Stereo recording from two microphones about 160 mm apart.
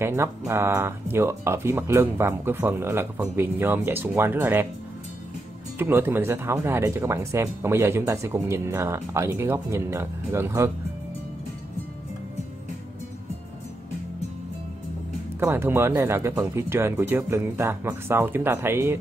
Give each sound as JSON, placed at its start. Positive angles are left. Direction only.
{"t": 0.0, "sound": "speech", "side_deg": -15}
{"t": 5.8, "sound": "speech", "side_deg": -15}
{"t": 15.4, "sound": "speech", "side_deg": -15}